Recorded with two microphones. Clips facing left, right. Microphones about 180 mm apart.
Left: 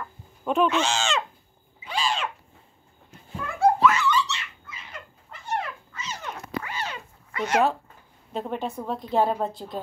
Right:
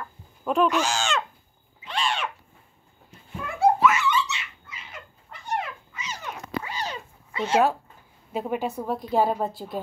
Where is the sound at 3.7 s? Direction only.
5° right (ahead or behind).